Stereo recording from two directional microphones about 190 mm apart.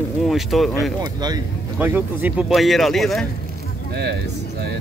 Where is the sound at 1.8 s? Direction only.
10° right (ahead or behind).